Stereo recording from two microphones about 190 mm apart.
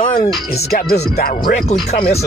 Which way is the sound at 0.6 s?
50° left (ahead or behind).